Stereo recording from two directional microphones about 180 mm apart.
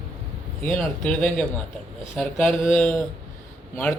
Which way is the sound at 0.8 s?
5° left (ahead or behind).